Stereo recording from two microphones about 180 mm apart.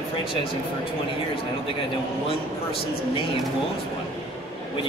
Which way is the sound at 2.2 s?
30° left (ahead or behind).